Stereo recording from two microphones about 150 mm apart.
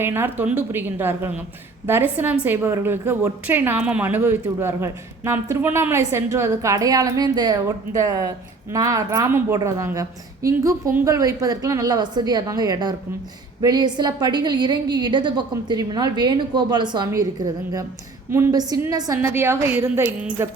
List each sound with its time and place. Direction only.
0.0 s a woman's voice: 15° right (ahead or behind)